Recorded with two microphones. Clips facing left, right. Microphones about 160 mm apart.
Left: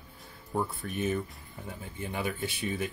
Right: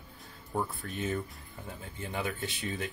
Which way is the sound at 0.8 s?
20° left (ahead or behind).